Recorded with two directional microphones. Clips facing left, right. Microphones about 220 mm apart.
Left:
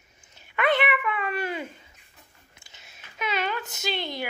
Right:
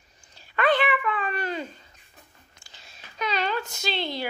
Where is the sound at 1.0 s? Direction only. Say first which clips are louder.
Even; 10° left (ahead or behind).